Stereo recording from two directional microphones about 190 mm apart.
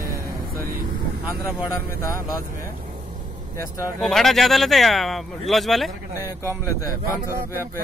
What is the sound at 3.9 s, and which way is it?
Speech, centre (ahead or behind).